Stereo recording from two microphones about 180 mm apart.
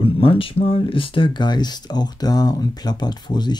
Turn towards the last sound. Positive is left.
turn(degrees=25)  # may be behind; listen again after turning